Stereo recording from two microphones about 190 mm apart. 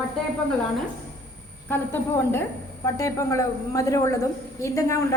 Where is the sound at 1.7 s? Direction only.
10° left (ahead or behind).